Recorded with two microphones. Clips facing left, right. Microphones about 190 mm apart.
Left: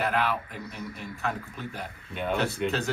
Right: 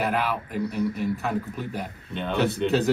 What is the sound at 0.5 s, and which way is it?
Speech, 50° right (ahead or behind).